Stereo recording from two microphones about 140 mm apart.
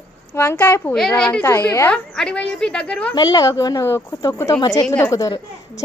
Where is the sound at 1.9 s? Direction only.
5° left (ahead or behind).